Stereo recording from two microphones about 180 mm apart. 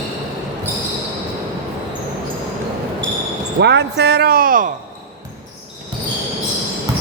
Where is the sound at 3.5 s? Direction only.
70° right (ahead or behind); by 4.6 s 50° right (ahead or behind).